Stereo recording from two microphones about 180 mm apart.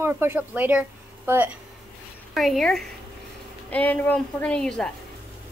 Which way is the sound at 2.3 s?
Centre (ahead or behind).